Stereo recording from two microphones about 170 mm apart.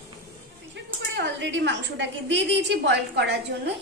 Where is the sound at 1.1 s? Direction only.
90° right.